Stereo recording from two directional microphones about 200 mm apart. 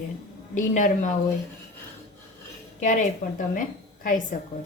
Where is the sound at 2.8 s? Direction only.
40° left (ahead or behind).